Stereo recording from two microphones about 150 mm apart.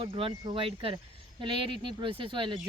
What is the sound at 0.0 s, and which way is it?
Speech, 35° right (ahead or behind).